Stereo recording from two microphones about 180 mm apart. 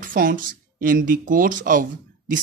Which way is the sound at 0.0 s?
50° right (ahead or behind).